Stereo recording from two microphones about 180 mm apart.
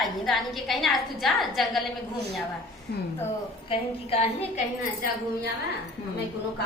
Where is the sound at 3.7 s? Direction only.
35° left (ahead or behind).